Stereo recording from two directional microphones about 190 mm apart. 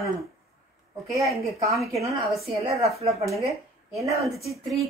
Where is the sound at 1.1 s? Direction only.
Centre (ahead or behind).